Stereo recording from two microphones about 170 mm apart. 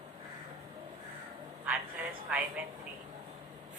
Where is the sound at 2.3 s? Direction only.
10° right (ahead or behind).